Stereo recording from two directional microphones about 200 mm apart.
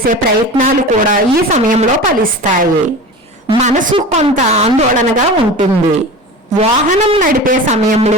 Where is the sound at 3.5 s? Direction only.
35° right (ahead or behind).